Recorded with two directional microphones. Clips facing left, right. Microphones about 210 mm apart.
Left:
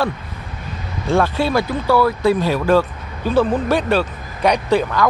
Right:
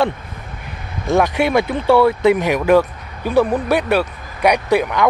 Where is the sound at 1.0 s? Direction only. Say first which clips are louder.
Right 1 dB; 15° right (ahead or behind).